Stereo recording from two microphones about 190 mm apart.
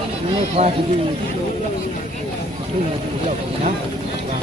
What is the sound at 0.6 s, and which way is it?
Speech, 30° right (ahead or behind).